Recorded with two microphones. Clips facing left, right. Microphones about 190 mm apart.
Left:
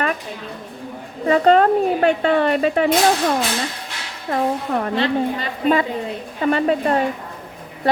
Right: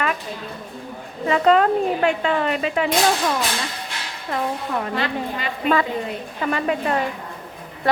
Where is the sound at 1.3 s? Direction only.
40° left (ahead or behind).